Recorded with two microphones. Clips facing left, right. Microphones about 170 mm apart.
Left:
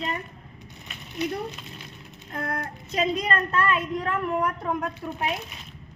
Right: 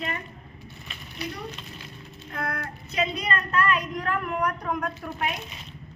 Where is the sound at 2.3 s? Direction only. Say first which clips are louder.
Left 1 dB; 35° left (ahead or behind).